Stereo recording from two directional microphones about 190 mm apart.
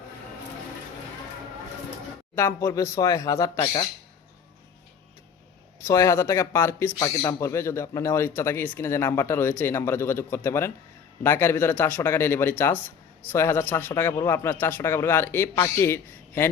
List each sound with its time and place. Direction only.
2.3 s speech: 10° left (ahead or behind)
5.8 s speech: 15° left (ahead or behind)